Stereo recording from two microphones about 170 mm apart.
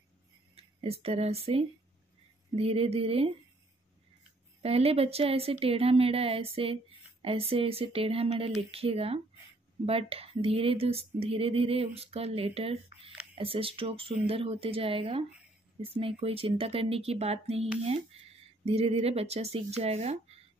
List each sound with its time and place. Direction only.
0.6 s a woman's voice: 35° right (ahead or behind)
4.6 s a woman's voice: 35° right (ahead or behind)
18.7 s a woman's voice: 35° right (ahead or behind)